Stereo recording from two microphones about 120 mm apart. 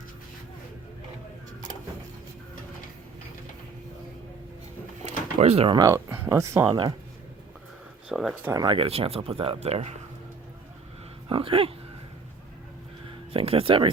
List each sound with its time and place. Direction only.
5.0 s drawer open or close: 65° right (ahead or behind)
5.7 s speech: 25° right (ahead or behind)
6.7 s speech: 40° right (ahead or behind)
8.1 s speech: 5° right (ahead or behind)
8.5 s speech: 40° right (ahead or behind); by 9.9 s 60° right (ahead or behind)
11.3 s speech: 50° right (ahead or behind)
13.3 s speech: 50° right (ahead or behind)